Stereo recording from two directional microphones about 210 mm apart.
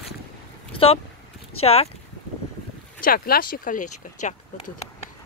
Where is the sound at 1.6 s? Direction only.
30° left (ahead or behind).